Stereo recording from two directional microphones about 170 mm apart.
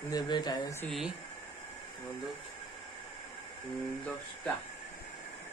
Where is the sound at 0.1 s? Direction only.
25° left (ahead or behind).